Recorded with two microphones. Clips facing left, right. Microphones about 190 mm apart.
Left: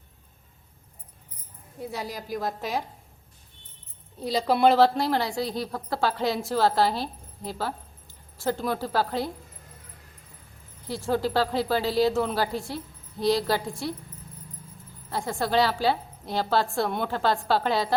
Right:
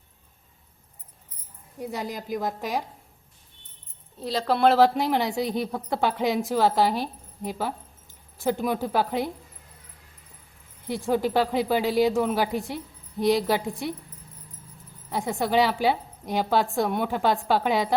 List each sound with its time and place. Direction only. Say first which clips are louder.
1.8 s speech: right 2 dB; 15° right (ahead or behind)
4.2 s speech: even; centre (ahead or behind)
4.8 s speech: right 1 dB; 15° right (ahead or behind)
10.8 s speech: right 2 dB; 15° right (ahead or behind)
15.1 s a woman's voice: right 2 dB; 20° right (ahead or behind)